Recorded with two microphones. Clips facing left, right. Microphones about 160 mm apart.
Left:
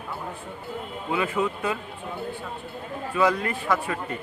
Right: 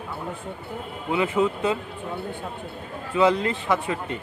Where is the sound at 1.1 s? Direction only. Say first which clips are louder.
Right 3 dB; 20° right (ahead or behind).